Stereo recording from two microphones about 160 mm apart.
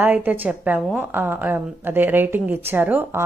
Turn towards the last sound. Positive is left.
turn(degrees=-10)  # may be behind; listen again after turning